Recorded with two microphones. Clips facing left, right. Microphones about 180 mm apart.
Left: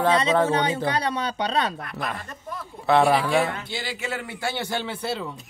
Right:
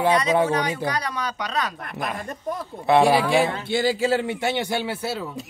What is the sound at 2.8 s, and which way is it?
Speech, 15° right (ahead or behind).